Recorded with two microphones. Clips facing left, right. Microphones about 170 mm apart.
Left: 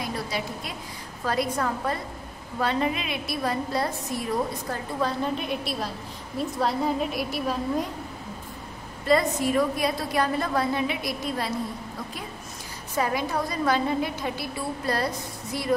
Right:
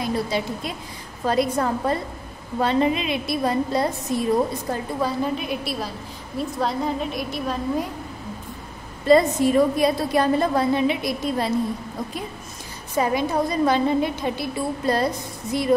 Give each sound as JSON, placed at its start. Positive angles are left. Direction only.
{"t": 0.0, "sound": "a woman's voice", "side_deg": -25}
{"t": 5.0, "sound": "a woman's voice", "side_deg": -5}
{"t": 9.0, "sound": "a woman's voice", "side_deg": -25}
{"t": 12.9, "sound": "a woman's voice", "side_deg": -20}